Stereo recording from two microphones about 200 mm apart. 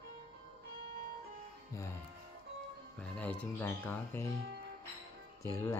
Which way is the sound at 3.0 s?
5° left (ahead or behind).